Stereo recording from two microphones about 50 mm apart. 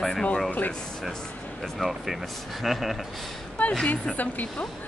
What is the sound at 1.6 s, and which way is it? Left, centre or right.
Speech, centre.